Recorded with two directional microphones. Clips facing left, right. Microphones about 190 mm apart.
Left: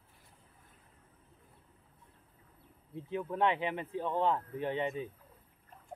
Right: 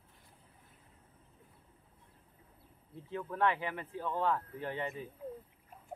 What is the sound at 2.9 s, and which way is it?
Speech, 20° left (ahead or behind).